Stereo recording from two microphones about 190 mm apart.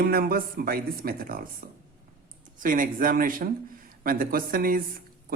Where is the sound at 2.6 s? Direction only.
45° right (ahead or behind).